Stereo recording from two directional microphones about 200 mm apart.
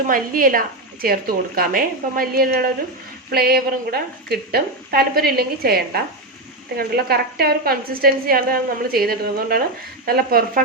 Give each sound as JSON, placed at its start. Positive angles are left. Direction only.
{"t": 0.1, "sound": "a woman's voice", "side_deg": -45}